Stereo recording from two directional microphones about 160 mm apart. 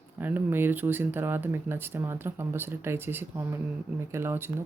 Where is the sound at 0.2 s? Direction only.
10° right (ahead or behind).